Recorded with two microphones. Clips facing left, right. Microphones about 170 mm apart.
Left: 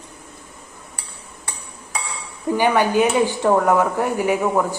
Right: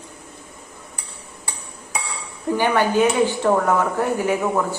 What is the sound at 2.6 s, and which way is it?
Speech, 15° left (ahead or behind).